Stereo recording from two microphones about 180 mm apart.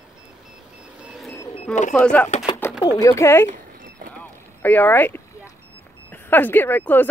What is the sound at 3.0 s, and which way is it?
Speech, 15° left (ahead or behind).